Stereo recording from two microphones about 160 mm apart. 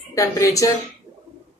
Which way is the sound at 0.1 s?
20° left (ahead or behind).